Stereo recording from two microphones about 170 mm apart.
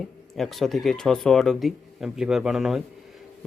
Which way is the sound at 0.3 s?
Centre (ahead or behind).